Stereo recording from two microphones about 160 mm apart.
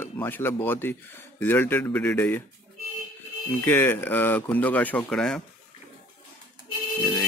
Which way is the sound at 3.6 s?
15° left (ahead or behind).